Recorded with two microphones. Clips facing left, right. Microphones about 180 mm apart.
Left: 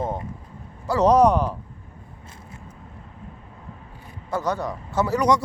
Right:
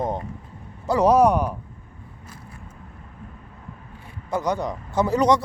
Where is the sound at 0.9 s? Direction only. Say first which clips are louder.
Even; 10° right (ahead or behind).